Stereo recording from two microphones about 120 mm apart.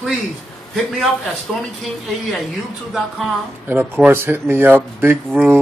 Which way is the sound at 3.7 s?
15° right (ahead or behind).